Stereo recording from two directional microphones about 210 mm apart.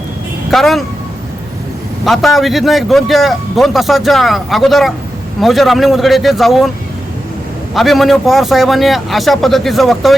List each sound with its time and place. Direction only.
0.5 s a man's voice: centre (ahead or behind)
2.0 s a man's voice: centre (ahead or behind)
7.7 s a man's voice: centre (ahead or behind)